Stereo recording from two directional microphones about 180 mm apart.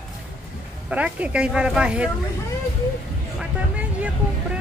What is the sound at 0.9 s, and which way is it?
Speech, 5° right (ahead or behind).